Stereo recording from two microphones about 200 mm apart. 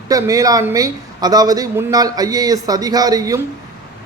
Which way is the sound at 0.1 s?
15° right (ahead or behind).